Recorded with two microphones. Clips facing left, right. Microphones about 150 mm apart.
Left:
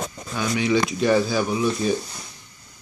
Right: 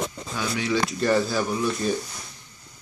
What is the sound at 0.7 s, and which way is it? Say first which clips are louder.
Speech: left 3 dB; 10° left (ahead or behind).